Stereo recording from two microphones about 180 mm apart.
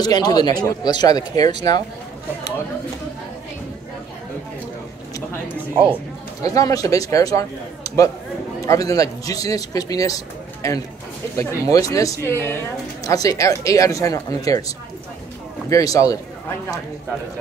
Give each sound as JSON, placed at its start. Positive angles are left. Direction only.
{"t": 0.0, "sound": "speech", "side_deg": 20}
{"t": 6.4, "sound": "speech", "side_deg": 20}
{"t": 8.6, "sound": "a man's voice", "side_deg": 20}
{"t": 15.7, "sound": "speech", "side_deg": 20}